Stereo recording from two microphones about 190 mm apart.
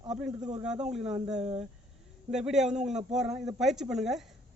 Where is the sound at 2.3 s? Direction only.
5° right (ahead or behind).